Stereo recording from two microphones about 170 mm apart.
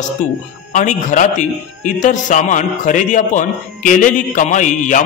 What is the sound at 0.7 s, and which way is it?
A man's voice, 45° left (ahead or behind).